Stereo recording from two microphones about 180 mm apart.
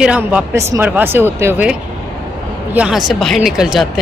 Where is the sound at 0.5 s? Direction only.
15° right (ahead or behind).